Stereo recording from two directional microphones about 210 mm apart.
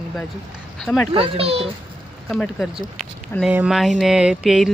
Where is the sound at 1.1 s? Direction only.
25° right (ahead or behind).